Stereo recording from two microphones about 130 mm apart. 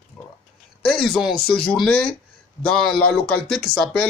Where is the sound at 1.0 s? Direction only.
5° right (ahead or behind).